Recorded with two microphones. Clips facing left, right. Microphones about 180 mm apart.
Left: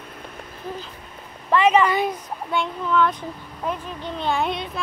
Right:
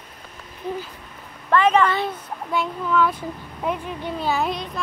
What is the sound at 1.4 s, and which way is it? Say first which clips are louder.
Speech: even; 5° left (ahead or behind).